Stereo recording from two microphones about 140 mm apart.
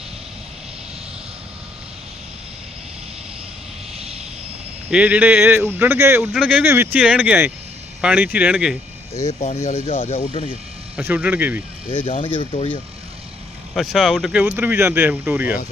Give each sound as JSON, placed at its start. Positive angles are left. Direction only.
{"t": 4.9, "sound": "speech", "side_deg": -10}
{"t": 6.7, "sound": "speech", "side_deg": -15}
{"t": 9.2, "sound": "speech", "side_deg": 55}
{"t": 10.9, "sound": "speech", "side_deg": -10}
{"t": 12.0, "sound": "speech", "side_deg": 40}
{"t": 13.7, "sound": "speech", "side_deg": 0}
{"t": 14.5, "sound": "speech", "side_deg": -15}